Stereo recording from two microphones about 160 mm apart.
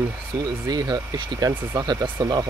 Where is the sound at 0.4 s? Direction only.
25° right (ahead or behind).